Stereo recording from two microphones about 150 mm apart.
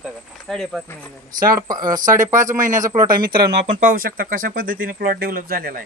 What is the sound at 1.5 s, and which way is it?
Speech, 25° right (ahead or behind).